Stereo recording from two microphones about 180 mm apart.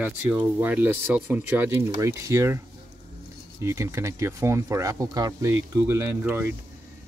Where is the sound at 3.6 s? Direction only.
15° right (ahead or behind).